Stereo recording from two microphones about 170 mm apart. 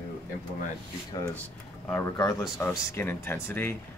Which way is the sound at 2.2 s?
20° left (ahead or behind).